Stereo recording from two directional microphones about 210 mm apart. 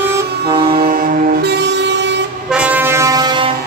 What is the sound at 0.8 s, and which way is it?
Vehicle, 40° right (ahead or behind).